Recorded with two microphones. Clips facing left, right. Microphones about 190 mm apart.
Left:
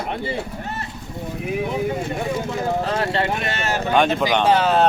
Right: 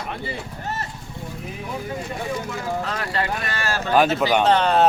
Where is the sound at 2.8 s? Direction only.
25° left (ahead or behind).